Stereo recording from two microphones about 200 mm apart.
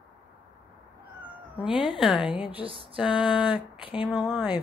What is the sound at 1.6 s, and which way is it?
Speech, 5° right (ahead or behind).